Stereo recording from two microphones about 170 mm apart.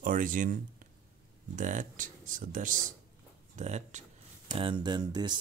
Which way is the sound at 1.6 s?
50° right (ahead or behind).